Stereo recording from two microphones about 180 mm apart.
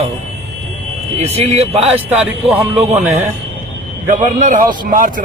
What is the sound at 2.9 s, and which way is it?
A man's voice, 40° right (ahead or behind).